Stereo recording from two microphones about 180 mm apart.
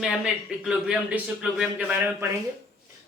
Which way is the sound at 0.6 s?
5° right (ahead or behind).